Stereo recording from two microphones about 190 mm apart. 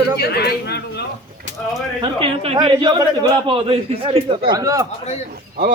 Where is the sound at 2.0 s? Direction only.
25° right (ahead or behind).